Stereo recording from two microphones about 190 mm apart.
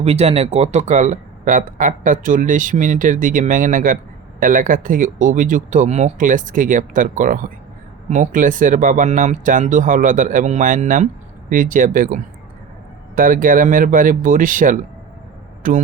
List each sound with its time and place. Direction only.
0.0 s speech: 35° right (ahead or behind)